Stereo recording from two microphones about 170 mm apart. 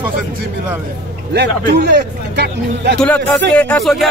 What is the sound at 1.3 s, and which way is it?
Speech, 85° right.